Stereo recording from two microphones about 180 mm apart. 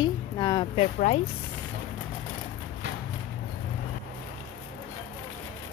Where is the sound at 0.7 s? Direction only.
40° left (ahead or behind).